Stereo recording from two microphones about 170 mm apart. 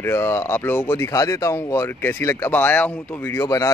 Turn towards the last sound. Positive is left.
turn(degrees=20)  # may be behind; listen again after turning